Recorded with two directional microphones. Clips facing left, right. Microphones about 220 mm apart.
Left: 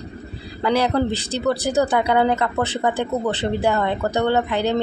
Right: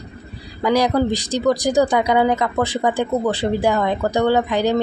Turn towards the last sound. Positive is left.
turn(degrees=-15)  # may be behind; listen again after turning